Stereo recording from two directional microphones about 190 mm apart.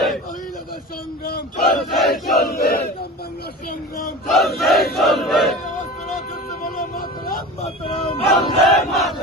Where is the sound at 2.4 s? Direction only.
55° left (ahead or behind).